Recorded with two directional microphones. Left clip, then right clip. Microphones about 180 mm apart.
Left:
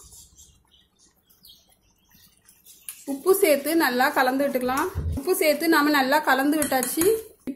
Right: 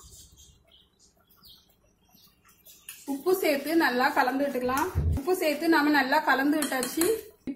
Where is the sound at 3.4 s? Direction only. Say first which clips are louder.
Left 3 dB; 45° left (ahead or behind).